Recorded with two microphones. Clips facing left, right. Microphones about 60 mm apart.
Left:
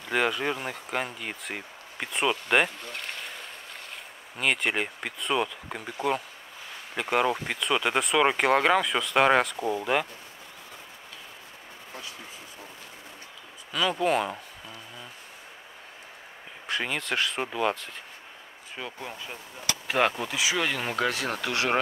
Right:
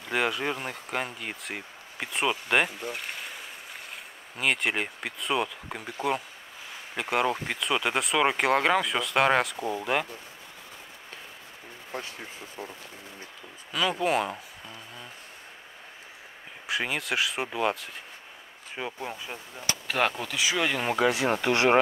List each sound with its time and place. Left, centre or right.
0.0 s speech: centre
13.7 s speech: centre
16.6 s speech: centre
18.8 s speech: centre
19.9 s speech: centre; by 21.7 s right